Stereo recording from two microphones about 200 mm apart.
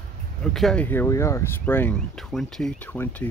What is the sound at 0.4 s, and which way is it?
Speech, 5° left (ahead or behind).